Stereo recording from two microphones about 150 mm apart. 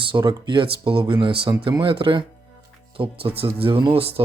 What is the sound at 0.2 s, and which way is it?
Speech, 25° right (ahead or behind).